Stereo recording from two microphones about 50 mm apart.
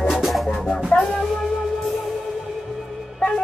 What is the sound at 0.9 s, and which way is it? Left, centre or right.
Music, left.